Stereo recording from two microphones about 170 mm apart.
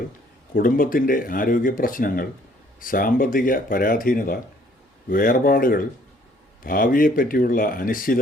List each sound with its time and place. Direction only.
0.5 s speech: 55° left (ahead or behind)